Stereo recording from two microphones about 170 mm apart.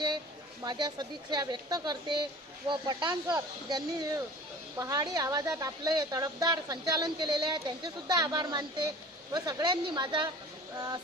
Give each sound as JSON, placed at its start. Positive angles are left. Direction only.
{"t": 0.7, "sound": "a woman's voice", "side_deg": -25}